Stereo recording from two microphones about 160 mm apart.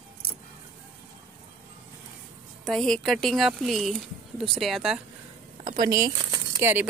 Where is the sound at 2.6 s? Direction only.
5° left (ahead or behind).